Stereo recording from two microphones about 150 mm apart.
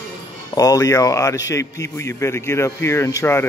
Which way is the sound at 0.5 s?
25° left (ahead or behind).